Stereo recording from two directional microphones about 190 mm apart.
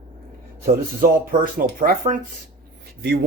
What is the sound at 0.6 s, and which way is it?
Speech, 50° right (ahead or behind).